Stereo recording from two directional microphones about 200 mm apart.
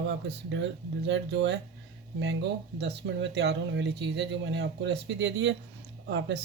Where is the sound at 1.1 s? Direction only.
65° right (ahead or behind).